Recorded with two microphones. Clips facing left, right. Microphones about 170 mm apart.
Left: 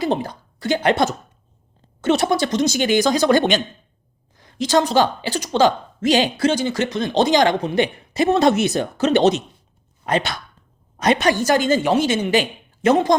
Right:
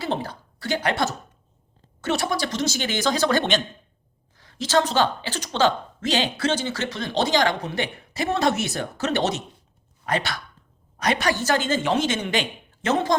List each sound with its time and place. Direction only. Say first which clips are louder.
0.0 s a woman's voice: left 6 dB; 15° left (ahead or behind)